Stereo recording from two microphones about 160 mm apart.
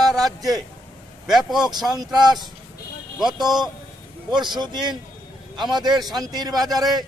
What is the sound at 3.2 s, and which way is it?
Speech, centre (ahead or behind).